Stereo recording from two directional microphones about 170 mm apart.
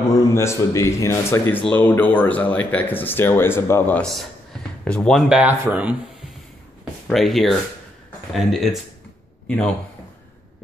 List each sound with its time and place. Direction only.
0.1 s speech: 15° left (ahead or behind); by 5.9 s 10° right (ahead or behind)
6.8 s a sound: centre (ahead or behind)
8.3 s speech: centre (ahead or behind)